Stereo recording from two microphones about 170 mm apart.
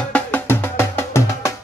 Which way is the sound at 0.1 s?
10° left (ahead or behind).